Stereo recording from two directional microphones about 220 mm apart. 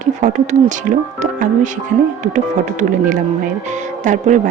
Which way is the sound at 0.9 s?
35° right (ahead or behind).